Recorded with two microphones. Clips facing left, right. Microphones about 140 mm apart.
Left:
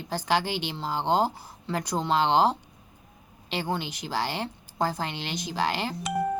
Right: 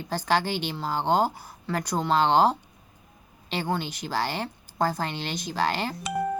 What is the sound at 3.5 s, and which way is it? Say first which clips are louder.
Speech: right 1 dB; 15° left (ahead or behind).